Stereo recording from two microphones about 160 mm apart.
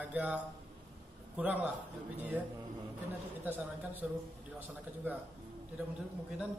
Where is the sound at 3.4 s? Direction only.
10° right (ahead or behind).